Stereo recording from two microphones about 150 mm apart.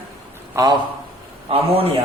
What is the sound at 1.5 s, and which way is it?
Speech, 40° right (ahead or behind).